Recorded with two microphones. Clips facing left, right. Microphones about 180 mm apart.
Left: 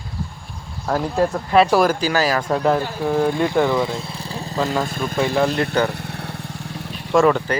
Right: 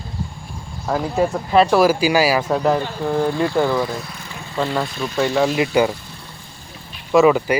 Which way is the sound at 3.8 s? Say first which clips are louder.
Left 1 dB; 25° left (ahead or behind).